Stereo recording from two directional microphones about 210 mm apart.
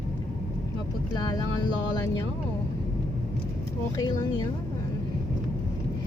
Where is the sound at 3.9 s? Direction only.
20° left (ahead or behind).